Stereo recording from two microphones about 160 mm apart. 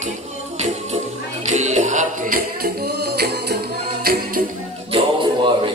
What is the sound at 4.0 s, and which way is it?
Music, 70° right (ahead or behind).